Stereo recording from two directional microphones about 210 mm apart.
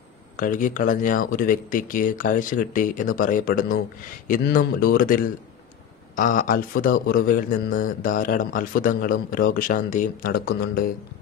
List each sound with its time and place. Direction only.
0.4 s speech: 40° left (ahead or behind)